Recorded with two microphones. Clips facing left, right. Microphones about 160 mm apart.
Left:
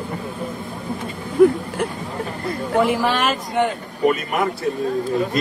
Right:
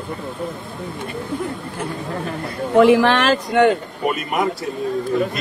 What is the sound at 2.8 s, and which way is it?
Speech, 70° right (ahead or behind).